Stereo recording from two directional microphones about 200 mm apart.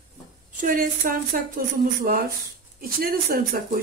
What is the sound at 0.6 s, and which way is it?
Speech, 45° right (ahead or behind).